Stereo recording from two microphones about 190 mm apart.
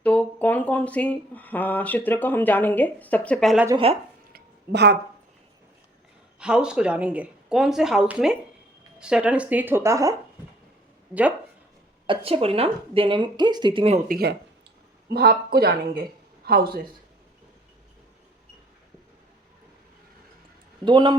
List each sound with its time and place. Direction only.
0.0 s speech: 10° left (ahead or behind)
4.3 s a sound: 55° right (ahead or behind)
6.4 s speech: 5° right (ahead or behind)
12.0 s speech: 30° right (ahead or behind)
14.1 s speech: 55° right (ahead or behind)
20.8 s speech: 25° right (ahead or behind)